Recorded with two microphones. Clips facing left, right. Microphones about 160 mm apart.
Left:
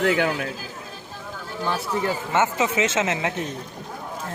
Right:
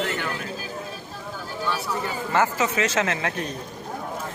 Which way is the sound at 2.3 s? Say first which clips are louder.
Right 1 dB; 25° left (ahead or behind).